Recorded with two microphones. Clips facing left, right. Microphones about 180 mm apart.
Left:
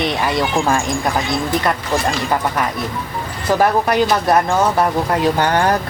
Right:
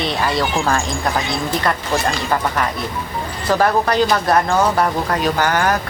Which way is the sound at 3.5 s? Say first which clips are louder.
Left 1 dB; 15° left (ahead or behind).